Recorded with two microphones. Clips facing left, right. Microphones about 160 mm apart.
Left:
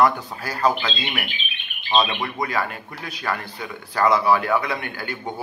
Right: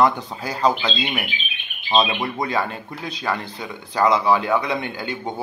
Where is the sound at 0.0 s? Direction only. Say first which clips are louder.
Right 1 dB; 20° right (ahead or behind).